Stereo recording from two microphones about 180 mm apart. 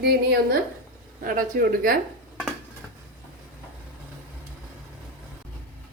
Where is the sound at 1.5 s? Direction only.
50° right (ahead or behind).